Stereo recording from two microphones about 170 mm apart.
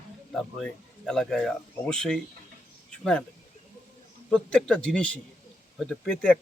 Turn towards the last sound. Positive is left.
turn(degrees=5)  # may be behind; listen again after turning